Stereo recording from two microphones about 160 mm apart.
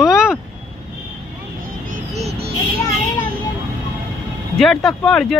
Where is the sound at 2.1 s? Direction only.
40° right (ahead or behind).